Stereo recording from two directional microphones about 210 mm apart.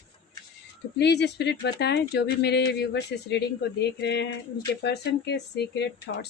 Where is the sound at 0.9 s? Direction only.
55° left (ahead or behind).